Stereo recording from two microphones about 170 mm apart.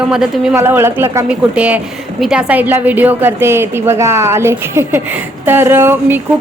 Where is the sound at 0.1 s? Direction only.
5° right (ahead or behind).